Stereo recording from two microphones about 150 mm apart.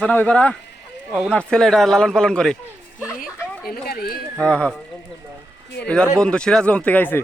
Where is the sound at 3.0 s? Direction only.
5° right (ahead or behind).